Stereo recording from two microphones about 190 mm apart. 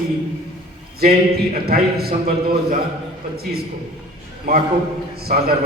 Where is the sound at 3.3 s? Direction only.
55° right (ahead or behind).